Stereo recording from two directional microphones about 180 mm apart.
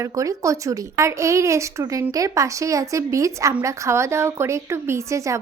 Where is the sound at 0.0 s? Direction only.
15° right (ahead or behind).